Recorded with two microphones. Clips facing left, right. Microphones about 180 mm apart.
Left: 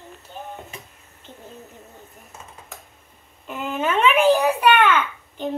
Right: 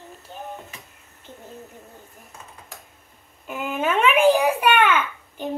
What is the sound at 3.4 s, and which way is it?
Babbling, 10° right (ahead or behind).